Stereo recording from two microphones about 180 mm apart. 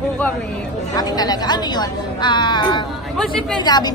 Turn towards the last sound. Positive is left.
turn(degrees=20)  # may be behind; listen again after turning